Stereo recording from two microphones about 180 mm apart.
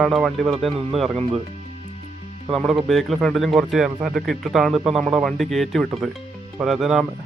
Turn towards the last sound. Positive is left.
turn(degrees=0)  # may be behind; listen again after turning